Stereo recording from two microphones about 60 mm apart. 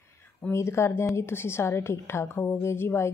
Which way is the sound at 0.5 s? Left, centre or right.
Left.